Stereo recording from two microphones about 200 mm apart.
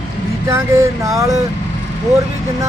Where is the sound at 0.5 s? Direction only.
15° right (ahead or behind).